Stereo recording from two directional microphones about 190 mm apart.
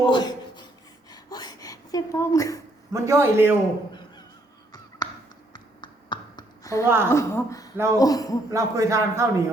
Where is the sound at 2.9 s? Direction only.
15° right (ahead or behind).